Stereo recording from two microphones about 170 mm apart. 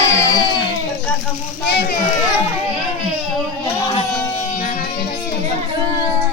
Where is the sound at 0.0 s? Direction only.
20° left (ahead or behind).